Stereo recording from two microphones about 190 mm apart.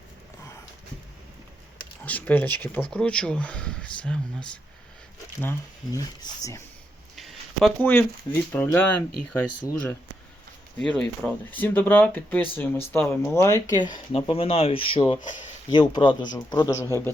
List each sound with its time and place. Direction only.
2.0 s speech: 10° left (ahead or behind)
7.2 s a sound: centre (ahead or behind)
7.9 s speech: 10° left (ahead or behind)